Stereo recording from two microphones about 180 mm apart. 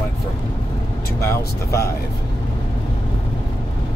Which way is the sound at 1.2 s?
15° left (ahead or behind).